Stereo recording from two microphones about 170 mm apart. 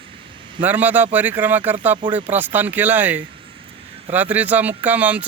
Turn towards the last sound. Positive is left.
turn(degrees=-10)  # may be behind; listen again after turning